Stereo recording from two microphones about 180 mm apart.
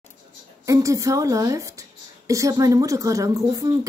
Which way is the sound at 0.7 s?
20° right (ahead or behind).